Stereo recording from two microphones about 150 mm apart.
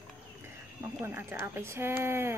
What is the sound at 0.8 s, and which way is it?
Speech, 15° right (ahead or behind).